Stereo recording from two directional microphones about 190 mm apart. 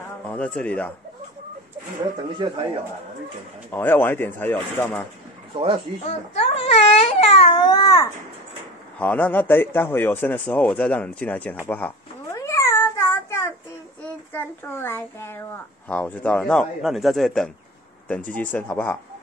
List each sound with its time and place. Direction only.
0.3 s speech: 5° left (ahead or behind)
2.3 s speech: 25° right (ahead or behind)
3.7 s speech: 10° left (ahead or behind)
6.0 s baby cry: 30° left (ahead or behind)
8.9 s speech: 10° left (ahead or behind)
11.6 s cat: 10° left (ahead or behind)
14.3 s a child's voice: 10° left (ahead or behind)